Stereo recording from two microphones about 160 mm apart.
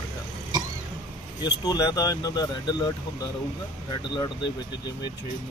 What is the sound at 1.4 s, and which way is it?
Speech, 25° left (ahead or behind).